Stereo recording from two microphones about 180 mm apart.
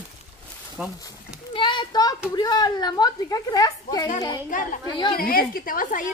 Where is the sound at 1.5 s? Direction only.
25° left (ahead or behind).